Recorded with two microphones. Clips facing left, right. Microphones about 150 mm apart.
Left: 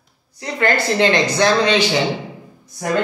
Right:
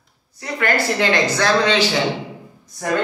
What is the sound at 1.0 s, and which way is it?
Speech, 20° left (ahead or behind).